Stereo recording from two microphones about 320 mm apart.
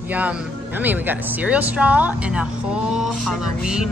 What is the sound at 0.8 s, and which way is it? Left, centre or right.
A woman's voice, centre.